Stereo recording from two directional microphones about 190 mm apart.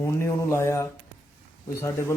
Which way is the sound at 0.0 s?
15° left (ahead or behind).